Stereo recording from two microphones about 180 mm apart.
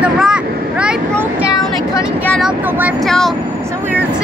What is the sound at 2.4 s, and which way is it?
Speech, 10° right (ahead or behind).